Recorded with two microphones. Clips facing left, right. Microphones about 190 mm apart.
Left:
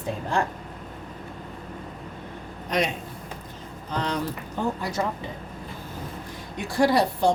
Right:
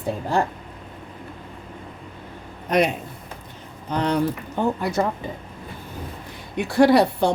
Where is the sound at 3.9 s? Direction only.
60° right (ahead or behind).